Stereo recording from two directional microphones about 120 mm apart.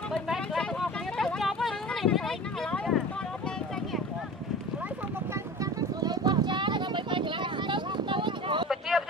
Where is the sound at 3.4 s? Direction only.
5° left (ahead or behind).